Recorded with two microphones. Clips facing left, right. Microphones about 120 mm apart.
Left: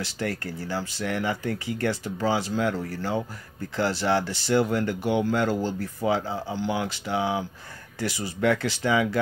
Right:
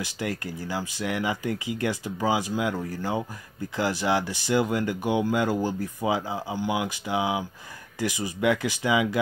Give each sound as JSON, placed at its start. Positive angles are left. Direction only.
{"t": 0.0, "sound": "speech", "side_deg": -15}